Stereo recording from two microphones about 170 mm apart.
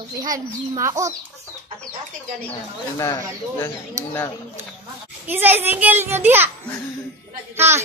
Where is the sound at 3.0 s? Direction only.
20° left (ahead or behind).